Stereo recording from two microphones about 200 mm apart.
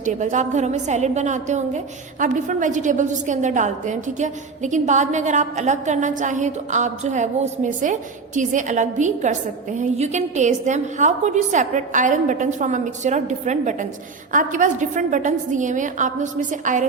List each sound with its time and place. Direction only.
0.0 s a woman's voice: 40° right (ahead or behind)